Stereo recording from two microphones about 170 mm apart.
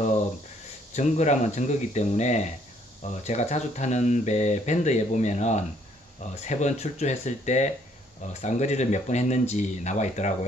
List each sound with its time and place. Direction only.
0.9 s speech: 40° left (ahead or behind)